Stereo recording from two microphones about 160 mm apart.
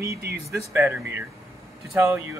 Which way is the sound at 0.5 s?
15° right (ahead or behind).